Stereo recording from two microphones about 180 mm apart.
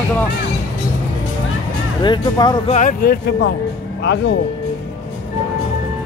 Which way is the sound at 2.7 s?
40° left (ahead or behind).